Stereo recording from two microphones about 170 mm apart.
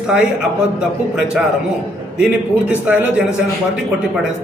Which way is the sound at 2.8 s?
10° right (ahead or behind).